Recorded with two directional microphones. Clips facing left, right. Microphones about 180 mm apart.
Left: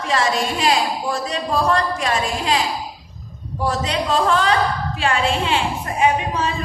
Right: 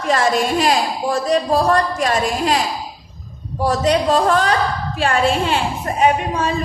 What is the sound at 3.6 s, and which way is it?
A woman's voice, 40° right (ahead or behind).